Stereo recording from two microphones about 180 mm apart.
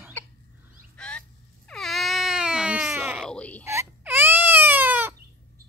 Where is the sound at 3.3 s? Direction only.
5° left (ahead or behind).